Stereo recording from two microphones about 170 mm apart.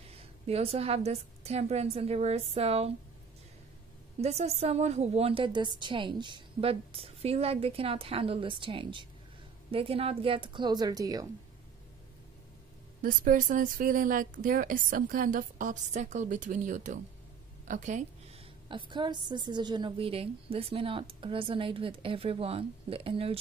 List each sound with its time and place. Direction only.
0.1 s a woman's voice: 35° right (ahead or behind)
4.2 s a woman's voice: 40° right (ahead or behind); by 11.2 s 20° right (ahead or behind)
13.0 s speech: 55° right (ahead or behind)
18.7 s a woman's voice: 30° right (ahead or behind)